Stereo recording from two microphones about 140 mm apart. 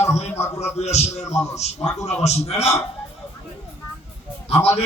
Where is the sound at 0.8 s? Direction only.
50° left (ahead or behind).